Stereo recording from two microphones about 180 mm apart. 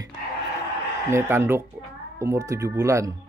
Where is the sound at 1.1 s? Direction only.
15° right (ahead or behind).